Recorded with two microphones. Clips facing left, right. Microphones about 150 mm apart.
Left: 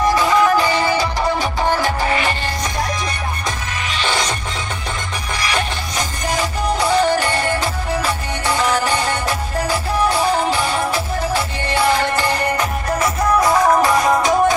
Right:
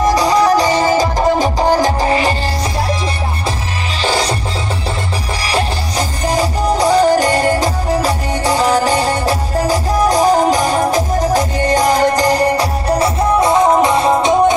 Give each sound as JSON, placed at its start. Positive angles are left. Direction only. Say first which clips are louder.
{"t": 0.0, "sound": "music", "louder": "right 3 dB", "side_deg": -40}
{"t": 4.0, "sound": "music", "louder": "right 5 dB", "side_deg": -35}
{"t": 5.4, "sound": "music", "louder": "right 4 dB", "side_deg": -35}